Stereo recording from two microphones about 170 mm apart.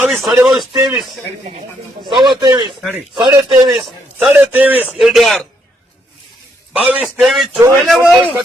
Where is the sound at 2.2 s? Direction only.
25° right (ahead or behind).